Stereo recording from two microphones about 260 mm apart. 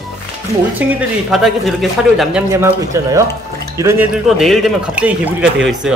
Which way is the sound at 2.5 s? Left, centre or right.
Centre.